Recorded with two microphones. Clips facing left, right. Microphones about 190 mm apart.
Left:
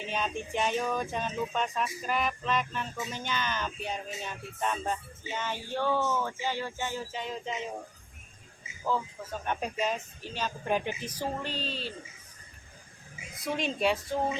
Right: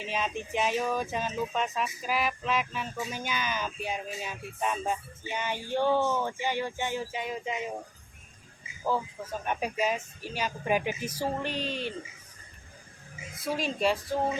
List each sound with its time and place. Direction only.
0.0 s speech: centre (ahead or behind)
9.4 s speech: 10° right (ahead or behind)
13.4 s speech: centre (ahead or behind)